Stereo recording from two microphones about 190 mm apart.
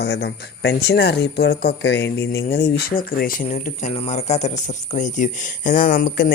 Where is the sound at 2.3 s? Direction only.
55° left (ahead or behind).